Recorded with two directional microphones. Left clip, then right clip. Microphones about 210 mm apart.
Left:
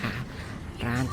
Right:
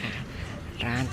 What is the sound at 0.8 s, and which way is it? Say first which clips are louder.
Speech: right 1 dB; 15° left (ahead or behind).